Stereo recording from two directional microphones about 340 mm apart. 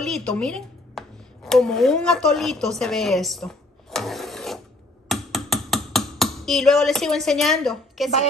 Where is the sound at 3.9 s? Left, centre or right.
Centre.